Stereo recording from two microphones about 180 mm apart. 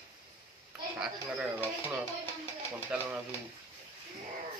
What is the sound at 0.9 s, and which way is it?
Speech, 5° right (ahead or behind).